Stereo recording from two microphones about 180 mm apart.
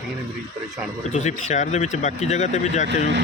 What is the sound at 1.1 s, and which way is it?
Speech, 40° left (ahead or behind).